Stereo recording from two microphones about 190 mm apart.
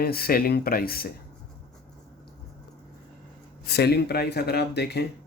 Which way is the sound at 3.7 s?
60° left (ahead or behind).